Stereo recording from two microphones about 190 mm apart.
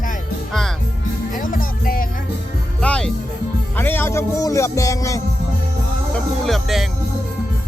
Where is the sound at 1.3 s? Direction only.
45° left (ahead or behind).